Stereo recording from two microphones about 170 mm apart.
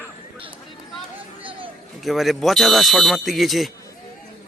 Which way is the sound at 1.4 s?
30° right (ahead or behind).